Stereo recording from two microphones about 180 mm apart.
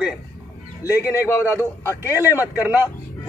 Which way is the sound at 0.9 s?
15° left (ahead or behind).